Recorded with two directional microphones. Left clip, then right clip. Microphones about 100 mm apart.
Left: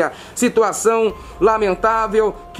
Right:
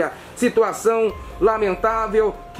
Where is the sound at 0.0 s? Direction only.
35° left (ahead or behind).